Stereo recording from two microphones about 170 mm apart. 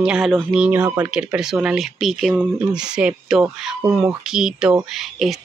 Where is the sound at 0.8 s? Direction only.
20° right (ahead or behind).